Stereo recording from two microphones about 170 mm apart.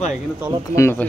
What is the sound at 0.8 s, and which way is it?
Speech, 15° left (ahead or behind).